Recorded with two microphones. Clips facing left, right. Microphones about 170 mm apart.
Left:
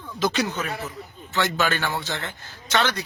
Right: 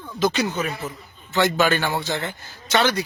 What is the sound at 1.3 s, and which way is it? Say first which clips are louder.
A man's voice: right 5 dB; 15° right (ahead or behind).